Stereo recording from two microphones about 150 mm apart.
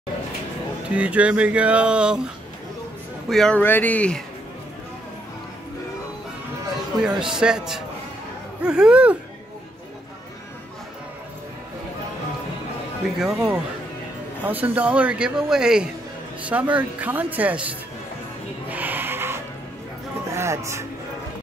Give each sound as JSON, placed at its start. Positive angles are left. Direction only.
{"t": 0.9, "sound": "a man's voice", "side_deg": -10}
{"t": 3.3, "sound": "speech", "side_deg": 5}
{"t": 7.1, "sound": "a man's voice", "side_deg": -5}
{"t": 13.2, "sound": "a man's voice", "side_deg": -5}
{"t": 18.7, "sound": "a sound", "side_deg": -10}
{"t": 20.2, "sound": "speech", "side_deg": -20}